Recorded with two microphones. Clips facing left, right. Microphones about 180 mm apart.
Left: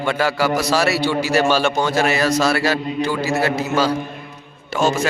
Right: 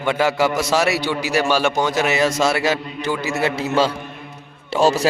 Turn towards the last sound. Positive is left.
turn(degrees=-35)  # may be behind; listen again after turning